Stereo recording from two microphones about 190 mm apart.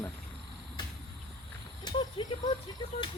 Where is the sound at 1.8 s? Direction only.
25° left (ahead or behind).